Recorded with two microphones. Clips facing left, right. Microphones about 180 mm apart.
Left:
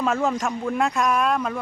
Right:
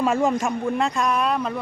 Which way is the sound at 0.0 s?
10° right (ahead or behind).